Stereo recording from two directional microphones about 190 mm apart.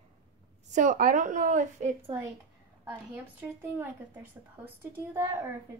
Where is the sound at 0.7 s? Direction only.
40° right (ahead or behind).